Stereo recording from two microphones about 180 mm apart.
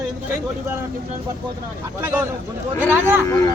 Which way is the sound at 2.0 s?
15° right (ahead or behind).